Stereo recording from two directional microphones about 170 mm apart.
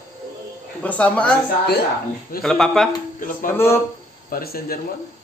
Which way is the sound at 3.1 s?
50° left (ahead or behind).